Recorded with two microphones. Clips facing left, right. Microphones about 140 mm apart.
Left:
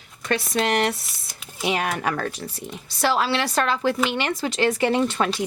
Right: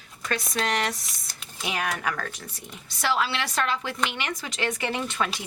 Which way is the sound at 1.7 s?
30° left (ahead or behind).